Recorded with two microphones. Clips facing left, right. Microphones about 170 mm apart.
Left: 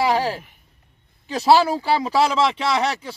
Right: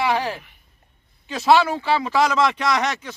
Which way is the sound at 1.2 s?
35° left (ahead or behind).